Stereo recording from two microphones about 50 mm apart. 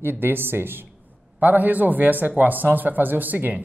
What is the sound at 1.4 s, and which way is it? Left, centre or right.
Speech, right.